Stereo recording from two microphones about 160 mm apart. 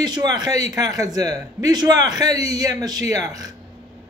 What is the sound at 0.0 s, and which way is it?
A man's voice, 25° right (ahead or behind).